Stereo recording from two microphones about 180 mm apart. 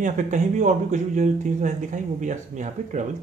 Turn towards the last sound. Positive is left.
turn(degrees=-40)  # may be behind; listen again after turning